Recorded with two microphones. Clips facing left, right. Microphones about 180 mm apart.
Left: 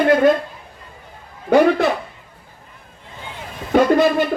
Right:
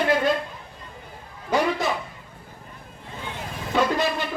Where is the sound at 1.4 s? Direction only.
60° left (ahead or behind).